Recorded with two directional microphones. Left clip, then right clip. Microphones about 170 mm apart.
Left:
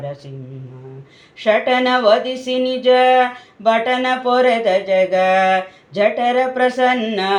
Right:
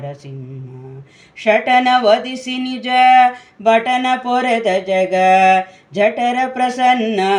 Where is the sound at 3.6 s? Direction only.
20° right (ahead or behind).